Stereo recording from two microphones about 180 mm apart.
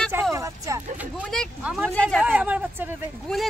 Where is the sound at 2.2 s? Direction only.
10° right (ahead or behind).